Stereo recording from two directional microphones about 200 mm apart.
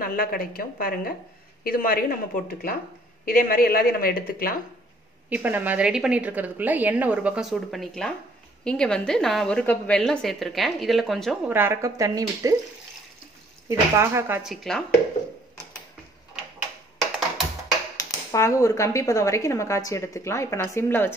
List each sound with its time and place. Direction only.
0.0 s speech: 45° left (ahead or behind)
5.3 s a woman's voice: 10° right (ahead or behind)
11.4 s a woman's voice: 10° right (ahead or behind)
13.7 s a woman's voice: 15° right (ahead or behind)
14.5 s a woman's voice: centre (ahead or behind)
17.9 s speech: 15° left (ahead or behind)